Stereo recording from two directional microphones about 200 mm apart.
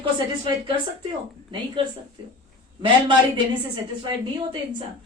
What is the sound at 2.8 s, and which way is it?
Speech, 25° right (ahead or behind).